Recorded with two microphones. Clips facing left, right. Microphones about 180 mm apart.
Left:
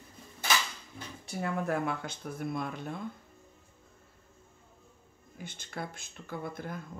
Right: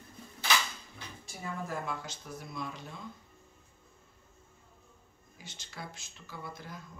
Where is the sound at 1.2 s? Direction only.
65° left (ahead or behind).